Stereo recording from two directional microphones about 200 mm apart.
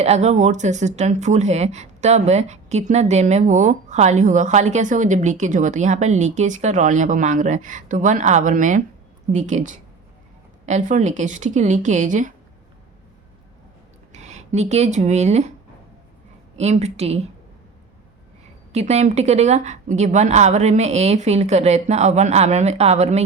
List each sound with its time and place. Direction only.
0.0 s speech: 35° right (ahead or behind)
14.1 s speech: 35° right (ahead or behind)
16.6 s speech: 35° right (ahead or behind)
18.7 s speech: 35° right (ahead or behind)